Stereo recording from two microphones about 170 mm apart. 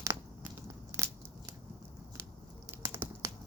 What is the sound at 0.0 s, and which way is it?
Biting, 15° right (ahead or behind).